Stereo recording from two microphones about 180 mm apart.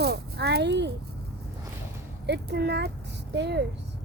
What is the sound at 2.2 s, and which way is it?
Speech, 70° right (ahead or behind).